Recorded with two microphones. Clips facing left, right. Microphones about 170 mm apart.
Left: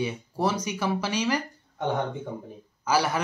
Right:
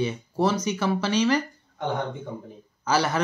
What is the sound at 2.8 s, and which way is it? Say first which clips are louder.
Speech: right 1 dB; 10° left (ahead or behind).